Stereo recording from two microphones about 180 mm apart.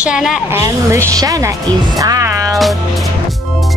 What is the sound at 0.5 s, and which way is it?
Speech, 20° right (ahead or behind).